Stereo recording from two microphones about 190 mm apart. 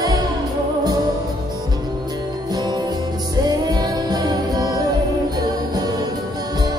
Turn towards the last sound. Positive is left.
turn(degrees=-20)  # may be behind; listen again after turning